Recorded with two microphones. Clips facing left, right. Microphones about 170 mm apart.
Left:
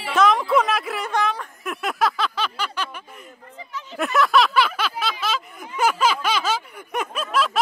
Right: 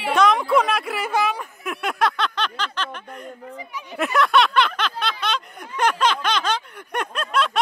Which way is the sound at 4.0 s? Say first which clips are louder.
Even; centre (ahead or behind).